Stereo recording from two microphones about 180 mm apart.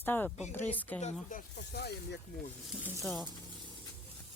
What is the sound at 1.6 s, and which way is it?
Speech, 65° left (ahead or behind).